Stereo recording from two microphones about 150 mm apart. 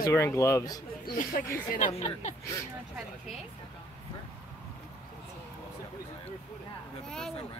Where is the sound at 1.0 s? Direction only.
65° left (ahead or behind).